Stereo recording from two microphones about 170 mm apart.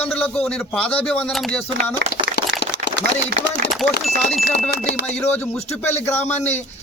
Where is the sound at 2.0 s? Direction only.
80° right.